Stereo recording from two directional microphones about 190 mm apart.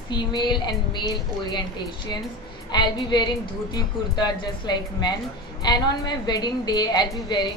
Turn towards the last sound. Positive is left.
turn(degrees=20)  # may be behind; listen again after turning